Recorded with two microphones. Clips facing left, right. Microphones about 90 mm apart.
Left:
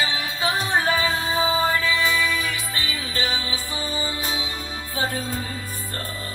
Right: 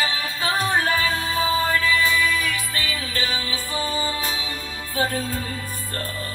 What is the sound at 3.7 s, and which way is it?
Music, 35° right (ahead or behind).